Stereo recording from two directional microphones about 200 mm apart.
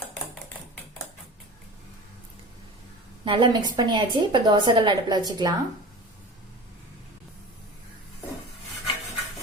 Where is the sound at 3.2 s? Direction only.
25° right (ahead or behind).